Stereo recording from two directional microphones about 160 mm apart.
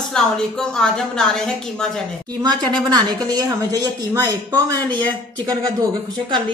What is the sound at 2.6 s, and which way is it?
Speech, 25° right (ahead or behind).